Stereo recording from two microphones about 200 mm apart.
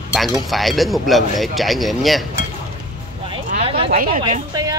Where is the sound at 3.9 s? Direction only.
45° right (ahead or behind).